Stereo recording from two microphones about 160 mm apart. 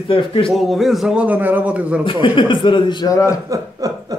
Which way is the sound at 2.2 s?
30° left (ahead or behind).